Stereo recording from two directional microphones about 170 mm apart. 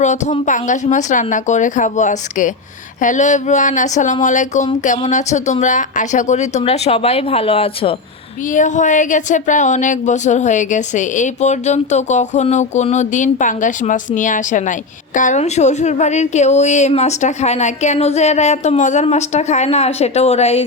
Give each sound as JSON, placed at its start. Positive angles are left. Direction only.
{"t": 0.0, "sound": "speech", "side_deg": 45}
{"t": 8.5, "sound": "speech", "side_deg": 45}